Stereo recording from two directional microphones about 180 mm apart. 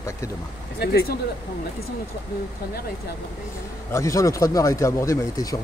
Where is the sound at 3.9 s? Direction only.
20° left (ahead or behind).